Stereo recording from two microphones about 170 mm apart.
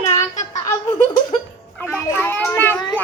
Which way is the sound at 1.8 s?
10° left (ahead or behind).